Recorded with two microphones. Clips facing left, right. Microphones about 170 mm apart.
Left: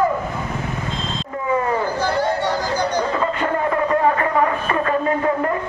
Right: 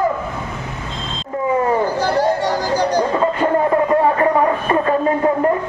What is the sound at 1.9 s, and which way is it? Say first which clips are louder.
Chatter: right 3 dB; 35° right (ahead or behind).